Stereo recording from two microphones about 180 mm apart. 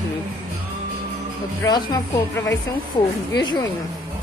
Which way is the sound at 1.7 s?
20° left (ahead or behind).